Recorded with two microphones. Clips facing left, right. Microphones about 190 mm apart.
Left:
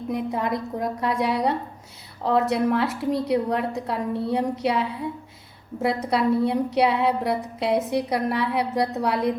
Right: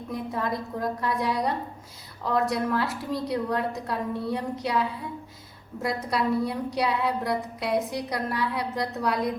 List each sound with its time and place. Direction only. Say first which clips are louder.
0.1 s a woman's voice: left 4 dB; 20° left (ahead or behind)